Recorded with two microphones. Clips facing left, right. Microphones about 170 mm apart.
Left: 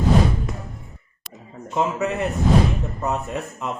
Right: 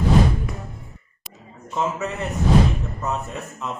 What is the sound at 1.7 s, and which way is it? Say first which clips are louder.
Speech: left 3 dB; 15° left (ahead or behind).